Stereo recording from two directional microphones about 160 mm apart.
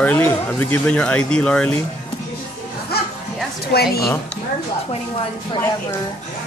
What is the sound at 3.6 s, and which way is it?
Speech, 80° left.